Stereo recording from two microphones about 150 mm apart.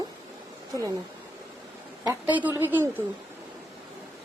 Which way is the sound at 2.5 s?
15° right (ahead or behind).